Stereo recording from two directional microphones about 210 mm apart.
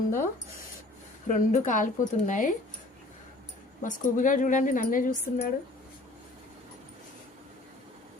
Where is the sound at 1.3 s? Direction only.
35° left (ahead or behind).